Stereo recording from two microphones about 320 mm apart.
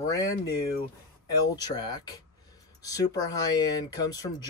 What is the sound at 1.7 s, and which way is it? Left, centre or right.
Speech, centre.